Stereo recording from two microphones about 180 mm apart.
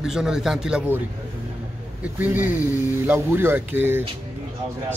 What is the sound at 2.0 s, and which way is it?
Speech, 10° right (ahead or behind).